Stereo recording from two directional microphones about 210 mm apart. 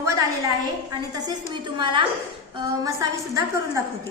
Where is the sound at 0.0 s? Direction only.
15° right (ahead or behind).